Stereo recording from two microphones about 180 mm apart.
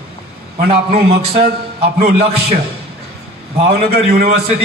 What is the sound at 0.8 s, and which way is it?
A man's voice, 35° right (ahead or behind).